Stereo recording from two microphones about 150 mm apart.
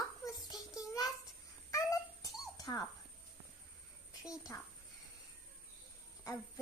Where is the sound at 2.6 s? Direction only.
25° left (ahead or behind).